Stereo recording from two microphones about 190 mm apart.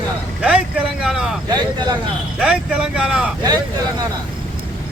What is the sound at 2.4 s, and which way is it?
Speech, 5° right (ahead or behind).